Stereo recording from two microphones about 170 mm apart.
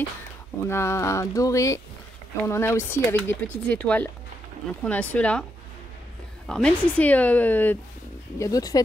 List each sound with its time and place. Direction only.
0.7 s speech: 15° left (ahead or behind)
6.4 s speech: 5° left (ahead or behind); by 8.8 s 20° left (ahead or behind)